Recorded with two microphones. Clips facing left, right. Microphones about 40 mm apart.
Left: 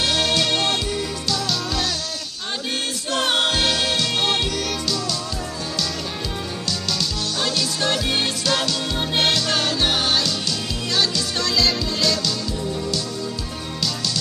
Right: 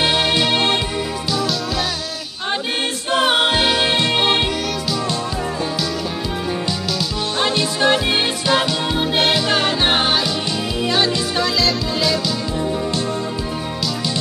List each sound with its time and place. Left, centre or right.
0.0 s music: right
3.1 s music: centre
7.3 s music: right
9.8 s music: right
10.9 s music: centre